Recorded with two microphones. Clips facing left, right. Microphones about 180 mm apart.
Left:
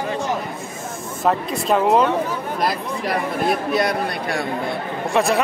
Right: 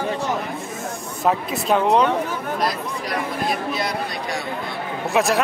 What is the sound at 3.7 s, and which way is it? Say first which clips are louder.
Speech: left 5 dB; 55° left (ahead or behind).